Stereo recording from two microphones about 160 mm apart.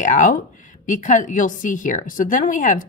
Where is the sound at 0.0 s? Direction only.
55° left (ahead or behind).